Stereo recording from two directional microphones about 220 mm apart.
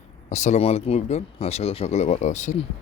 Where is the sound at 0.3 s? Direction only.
30° left (ahead or behind).